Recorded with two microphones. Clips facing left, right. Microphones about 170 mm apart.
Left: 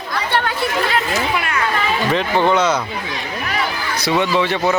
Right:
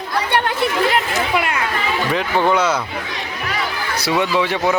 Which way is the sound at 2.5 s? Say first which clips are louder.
Even; 10° right (ahead or behind).